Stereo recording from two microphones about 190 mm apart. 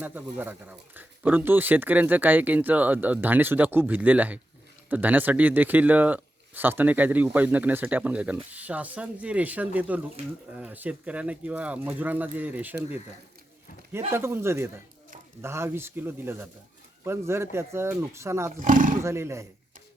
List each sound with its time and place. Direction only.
0.0 s speech: 10° right (ahead or behind)
13.9 s speech: 15° right (ahead or behind)
18.6 s speech: 45° right (ahead or behind)
19.0 s speech: 15° right (ahead or behind)